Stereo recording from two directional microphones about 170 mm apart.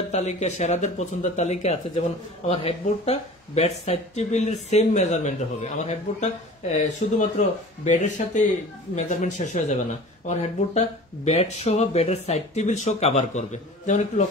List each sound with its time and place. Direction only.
0.1 s speech: 40° left (ahead or behind)